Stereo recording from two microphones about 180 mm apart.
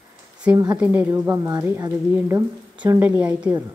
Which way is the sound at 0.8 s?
10° right (ahead or behind).